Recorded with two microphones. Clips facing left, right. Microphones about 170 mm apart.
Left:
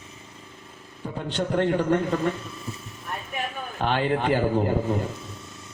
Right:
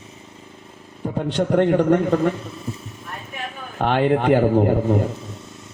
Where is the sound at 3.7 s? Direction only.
60° right (ahead or behind).